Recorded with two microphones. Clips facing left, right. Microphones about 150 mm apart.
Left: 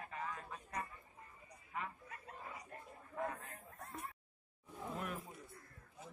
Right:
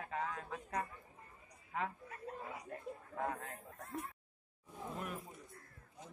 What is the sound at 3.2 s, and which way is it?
Speech, 85° right.